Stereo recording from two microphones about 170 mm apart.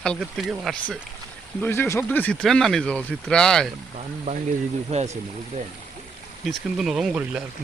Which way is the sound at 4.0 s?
45° right (ahead or behind).